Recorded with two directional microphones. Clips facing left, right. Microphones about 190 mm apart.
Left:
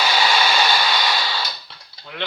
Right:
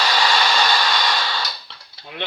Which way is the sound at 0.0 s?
5° left (ahead or behind).